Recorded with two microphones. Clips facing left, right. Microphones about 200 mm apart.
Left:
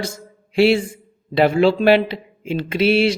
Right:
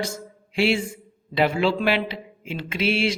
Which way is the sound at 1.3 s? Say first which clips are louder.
Left 6 dB; 45° left (ahead or behind).